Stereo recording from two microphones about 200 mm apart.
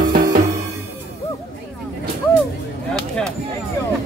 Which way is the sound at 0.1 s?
45° right (ahead or behind).